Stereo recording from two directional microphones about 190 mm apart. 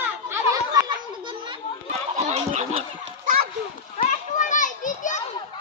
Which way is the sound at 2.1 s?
35° right (ahead or behind).